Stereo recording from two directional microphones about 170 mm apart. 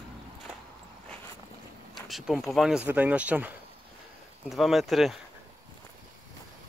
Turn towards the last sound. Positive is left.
turn(degrees=0)  # may be behind; listen again after turning